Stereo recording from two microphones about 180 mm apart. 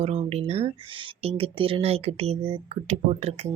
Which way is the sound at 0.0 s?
35° right (ahead or behind).